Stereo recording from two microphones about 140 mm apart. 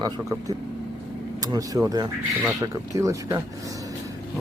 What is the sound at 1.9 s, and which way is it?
Speech, 25° right (ahead or behind).